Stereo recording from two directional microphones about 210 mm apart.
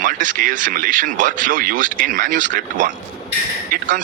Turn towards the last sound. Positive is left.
turn(degrees=-40)  # may be behind; listen again after turning